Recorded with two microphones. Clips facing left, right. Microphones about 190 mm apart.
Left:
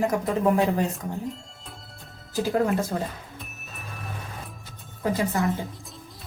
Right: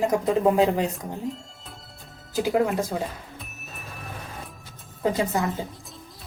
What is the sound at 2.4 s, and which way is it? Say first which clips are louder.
Speech: right 1 dB; 15° right (ahead or behind).